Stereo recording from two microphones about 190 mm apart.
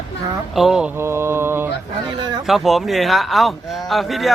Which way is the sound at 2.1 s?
20° right (ahead or behind).